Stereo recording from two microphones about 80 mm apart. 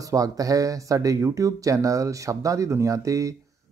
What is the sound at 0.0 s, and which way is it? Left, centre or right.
Speech, right.